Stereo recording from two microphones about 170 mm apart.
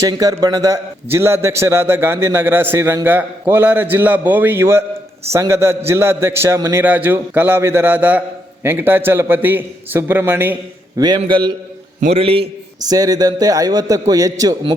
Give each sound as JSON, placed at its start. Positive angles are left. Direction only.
{"t": 0.0, "sound": "a man's voice", "side_deg": -20}
{"t": 10.9, "sound": "a man's voice", "side_deg": -25}
{"t": 11.9, "sound": "a man's voice", "side_deg": -40}
{"t": 12.9, "sound": "a man's voice", "side_deg": -20}